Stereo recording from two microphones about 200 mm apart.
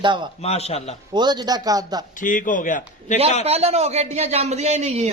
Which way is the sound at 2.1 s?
40° left (ahead or behind).